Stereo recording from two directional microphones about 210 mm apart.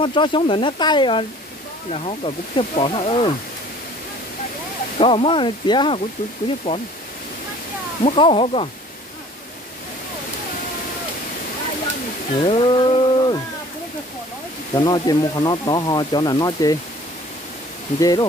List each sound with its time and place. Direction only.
0.0 s speech: 25° left (ahead or behind)
4.9 s speech: 25° left (ahead or behind)
8.0 s speech: 25° left (ahead or behind)
12.4 s a sound: 25° left (ahead or behind)
14.7 s speech: 20° left (ahead or behind)